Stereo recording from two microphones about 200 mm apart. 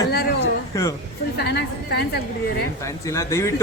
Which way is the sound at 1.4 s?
55° left (ahead or behind).